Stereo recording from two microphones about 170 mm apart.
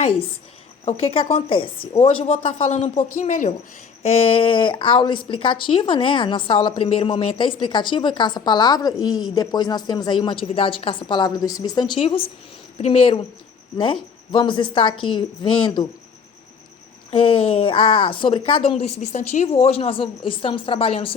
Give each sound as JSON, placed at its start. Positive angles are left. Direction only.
{"t": 0.9, "sound": "a woman's voice", "side_deg": 35}
{"t": 4.0, "sound": "a woman's voice", "side_deg": 35}
{"t": 17.1, "sound": "a woman's voice", "side_deg": 30}